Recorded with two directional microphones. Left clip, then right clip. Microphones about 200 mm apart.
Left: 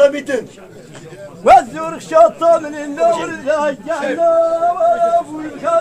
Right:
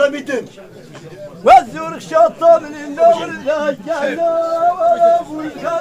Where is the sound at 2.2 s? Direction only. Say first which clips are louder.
Even; 15° left (ahead or behind).